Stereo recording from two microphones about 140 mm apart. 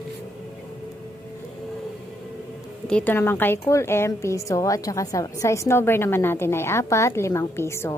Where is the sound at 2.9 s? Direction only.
10° left (ahead or behind).